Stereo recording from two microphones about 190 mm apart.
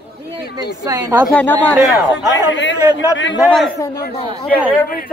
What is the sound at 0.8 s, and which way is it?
Speech, 20° right (ahead or behind).